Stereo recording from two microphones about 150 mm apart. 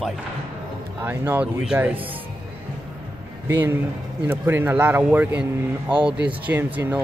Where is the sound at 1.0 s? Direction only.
10° right (ahead or behind).